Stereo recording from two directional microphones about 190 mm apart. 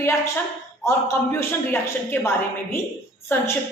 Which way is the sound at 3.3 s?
10° left (ahead or behind).